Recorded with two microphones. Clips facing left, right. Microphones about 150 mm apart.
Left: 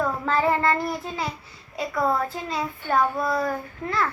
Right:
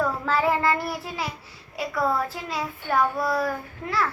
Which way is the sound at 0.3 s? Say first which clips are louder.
Left 1 dB; 5° right (ahead or behind).